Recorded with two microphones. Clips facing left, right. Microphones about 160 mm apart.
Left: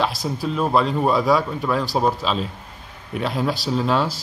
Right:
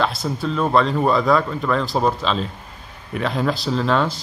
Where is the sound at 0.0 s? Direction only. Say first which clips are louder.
Right 1 dB; centre (ahead or behind).